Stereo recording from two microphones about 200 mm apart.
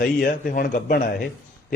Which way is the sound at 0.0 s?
45° left (ahead or behind).